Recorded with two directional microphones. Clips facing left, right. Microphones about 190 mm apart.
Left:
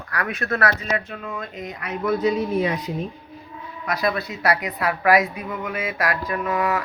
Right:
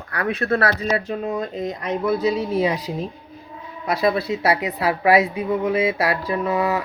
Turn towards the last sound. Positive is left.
turn(degrees=-30)  # may be behind; listen again after turning